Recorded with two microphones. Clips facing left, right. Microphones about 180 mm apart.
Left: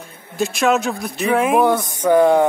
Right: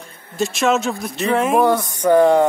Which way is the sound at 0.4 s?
Centre (ahead or behind).